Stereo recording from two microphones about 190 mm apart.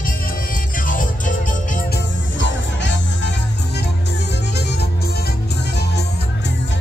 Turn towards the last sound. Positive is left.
turn(degrees=60)  # may be behind; listen again after turning